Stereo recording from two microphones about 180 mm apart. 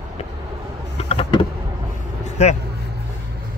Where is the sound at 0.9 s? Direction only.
30° left (ahead or behind).